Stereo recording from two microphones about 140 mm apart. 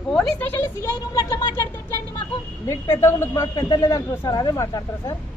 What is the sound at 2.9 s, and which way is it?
A man's voice, 20° left (ahead or behind).